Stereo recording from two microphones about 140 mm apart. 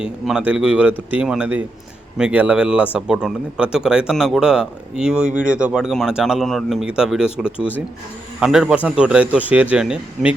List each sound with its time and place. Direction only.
0.0 s speech: 5° right (ahead or behind)